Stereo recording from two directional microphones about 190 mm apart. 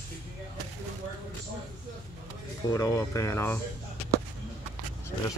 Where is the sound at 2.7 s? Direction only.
15° left (ahead or behind).